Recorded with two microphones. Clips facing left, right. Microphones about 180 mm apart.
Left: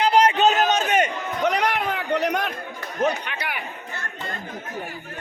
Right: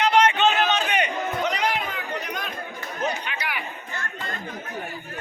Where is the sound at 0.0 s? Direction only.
35° left (ahead or behind); by 2.5 s 70° left (ahead or behind).